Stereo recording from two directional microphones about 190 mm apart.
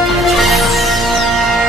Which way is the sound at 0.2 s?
Centre (ahead or behind).